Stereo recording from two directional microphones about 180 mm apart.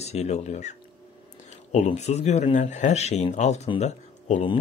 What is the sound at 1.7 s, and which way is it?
Speech, 40° left (ahead or behind).